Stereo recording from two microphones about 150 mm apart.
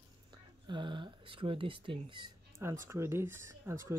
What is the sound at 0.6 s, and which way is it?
Speech, 30° right (ahead or behind).